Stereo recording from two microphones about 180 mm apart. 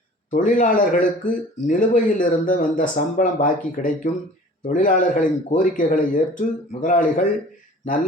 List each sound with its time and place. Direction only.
0.3 s a man's voice: 45° left (ahead or behind)